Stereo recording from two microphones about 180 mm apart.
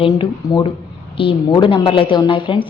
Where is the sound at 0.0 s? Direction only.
30° left (ahead or behind).